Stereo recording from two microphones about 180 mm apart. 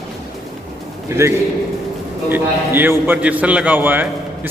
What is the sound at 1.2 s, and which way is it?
A man's voice, 15° right (ahead or behind).